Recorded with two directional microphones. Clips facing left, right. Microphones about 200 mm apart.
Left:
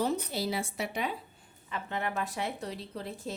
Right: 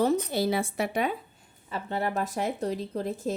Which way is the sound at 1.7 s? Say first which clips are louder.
Right 5 dB; 35° right (ahead or behind).